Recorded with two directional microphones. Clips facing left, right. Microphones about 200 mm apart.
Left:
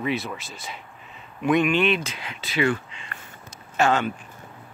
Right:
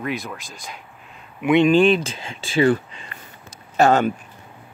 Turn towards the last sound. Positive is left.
turn(degrees=-40)  # may be behind; listen again after turning